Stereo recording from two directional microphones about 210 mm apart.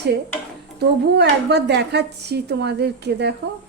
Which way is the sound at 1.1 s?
50° right (ahead or behind).